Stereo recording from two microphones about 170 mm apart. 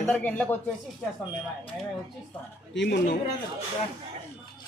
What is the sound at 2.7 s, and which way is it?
Speech, 90° left.